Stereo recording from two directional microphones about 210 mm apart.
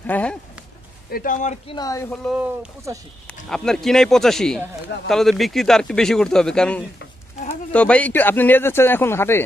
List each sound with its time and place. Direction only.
0.0 s a man's voice: 5° left (ahead or behind)
1.1 s speech: 40° left (ahead or behind)
1.8 s a man's voice: 15° left (ahead or behind)
2.2 s speech: 5° right (ahead or behind)
3.4 s a man's voice: centre (ahead or behind)